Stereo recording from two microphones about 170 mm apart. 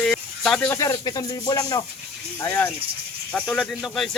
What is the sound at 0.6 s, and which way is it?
Speech, 15° left (ahead or behind).